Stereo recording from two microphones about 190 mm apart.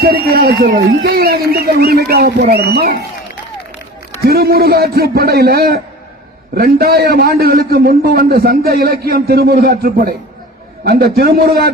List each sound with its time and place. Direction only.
0.0 s speech: 55° right (ahead or behind)
4.2 s a man's voice: 55° right (ahead or behind)